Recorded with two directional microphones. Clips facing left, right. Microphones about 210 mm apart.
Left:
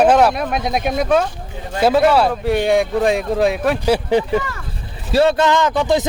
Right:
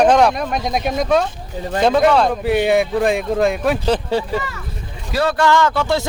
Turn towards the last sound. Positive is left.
turn(degrees=15)  # may be behind; listen again after turning